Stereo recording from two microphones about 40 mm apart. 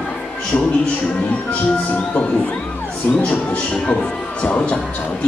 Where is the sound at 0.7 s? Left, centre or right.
Left.